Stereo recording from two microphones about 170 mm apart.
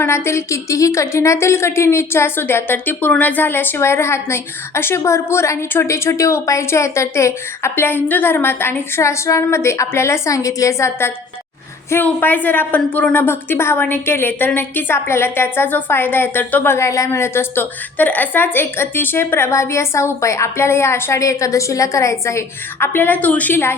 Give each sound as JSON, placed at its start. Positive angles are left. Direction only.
{"t": 0.0, "sound": "a woman's voice", "side_deg": 15}